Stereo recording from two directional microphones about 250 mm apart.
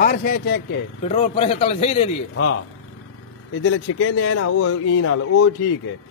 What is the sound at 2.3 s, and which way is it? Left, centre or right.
Speech, left.